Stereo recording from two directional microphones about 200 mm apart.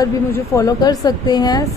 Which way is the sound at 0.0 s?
15° left (ahead or behind).